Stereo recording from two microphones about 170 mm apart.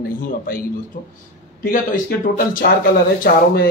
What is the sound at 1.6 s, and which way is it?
A man's voice, 60° left (ahead or behind).